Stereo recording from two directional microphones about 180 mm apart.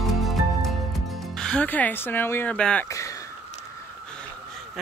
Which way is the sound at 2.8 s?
15° left (ahead or behind).